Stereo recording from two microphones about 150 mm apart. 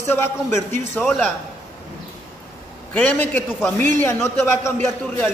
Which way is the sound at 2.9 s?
10° left (ahead or behind).